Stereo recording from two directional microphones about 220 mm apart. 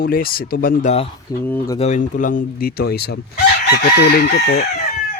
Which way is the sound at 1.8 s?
35° left (ahead or behind).